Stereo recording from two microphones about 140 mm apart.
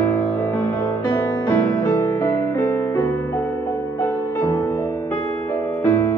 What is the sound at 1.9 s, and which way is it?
Music, 15° left (ahead or behind).